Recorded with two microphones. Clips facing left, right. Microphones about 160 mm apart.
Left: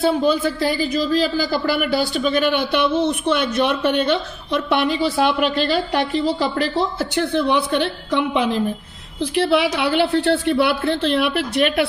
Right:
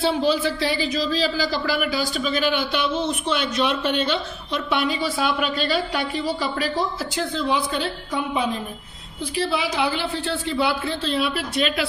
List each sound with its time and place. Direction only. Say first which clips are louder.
0.2 s speech: left 3 dB; 50° left (ahead or behind); by 8.5 s 75° left (ahead or behind)
9.2 s a woman's voice: left 7 dB; 65° left (ahead or behind)